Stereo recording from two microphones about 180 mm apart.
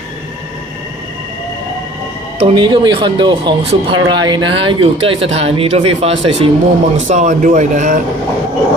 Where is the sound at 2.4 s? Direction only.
30° right (ahead or behind); by 8.0 s 45° right (ahead or behind).